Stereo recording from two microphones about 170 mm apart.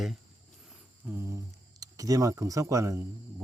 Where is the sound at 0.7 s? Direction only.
15° right (ahead or behind).